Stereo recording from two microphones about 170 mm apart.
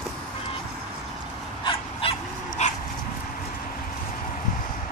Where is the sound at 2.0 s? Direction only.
35° left (ahead or behind).